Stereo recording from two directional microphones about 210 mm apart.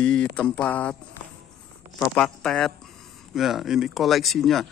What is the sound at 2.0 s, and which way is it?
A man's voice, 5° left (ahead or behind).